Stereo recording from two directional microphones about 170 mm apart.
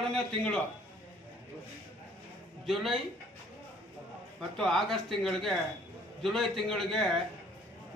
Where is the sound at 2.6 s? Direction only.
Centre (ahead or behind).